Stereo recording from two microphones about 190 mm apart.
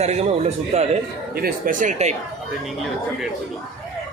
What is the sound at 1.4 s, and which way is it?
Speech, 50° right (ahead or behind).